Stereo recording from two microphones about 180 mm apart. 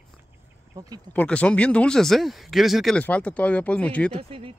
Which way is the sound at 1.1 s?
5° left (ahead or behind).